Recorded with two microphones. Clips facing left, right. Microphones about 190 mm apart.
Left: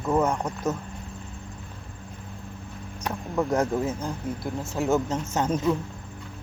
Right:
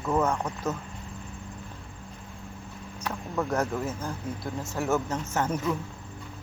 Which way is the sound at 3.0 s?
15° left (ahead or behind).